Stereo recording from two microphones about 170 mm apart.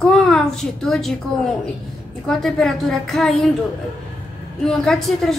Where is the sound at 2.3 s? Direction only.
Centre (ahead or behind).